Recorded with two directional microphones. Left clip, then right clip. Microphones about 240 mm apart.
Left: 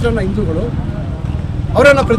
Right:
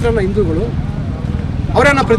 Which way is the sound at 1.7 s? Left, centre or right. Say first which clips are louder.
Left 3 dB; centre.